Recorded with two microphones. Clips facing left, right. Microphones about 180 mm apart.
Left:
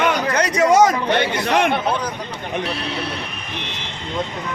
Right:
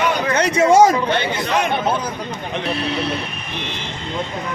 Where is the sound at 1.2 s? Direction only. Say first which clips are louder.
Left 2 dB; 60° left (ahead or behind).